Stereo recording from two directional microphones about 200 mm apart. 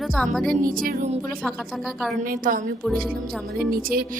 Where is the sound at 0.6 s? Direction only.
45° right (ahead or behind).